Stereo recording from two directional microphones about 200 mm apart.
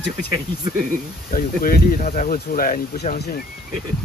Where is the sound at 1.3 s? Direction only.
45° left (ahead or behind).